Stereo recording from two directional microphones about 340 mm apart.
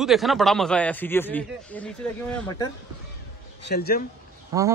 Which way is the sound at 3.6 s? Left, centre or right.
Left.